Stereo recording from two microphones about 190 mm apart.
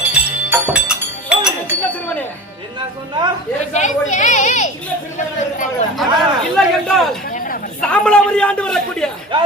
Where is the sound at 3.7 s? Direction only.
40° left (ahead or behind).